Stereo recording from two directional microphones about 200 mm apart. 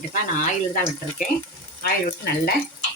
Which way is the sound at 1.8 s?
50° left (ahead or behind).